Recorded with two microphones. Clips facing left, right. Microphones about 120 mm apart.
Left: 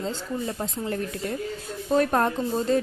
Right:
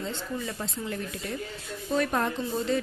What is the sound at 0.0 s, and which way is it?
Speech, 35° left (ahead or behind).